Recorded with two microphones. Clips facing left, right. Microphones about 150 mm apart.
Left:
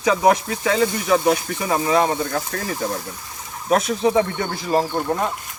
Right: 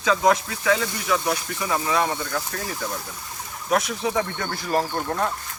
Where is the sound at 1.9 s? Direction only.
25° left (ahead or behind).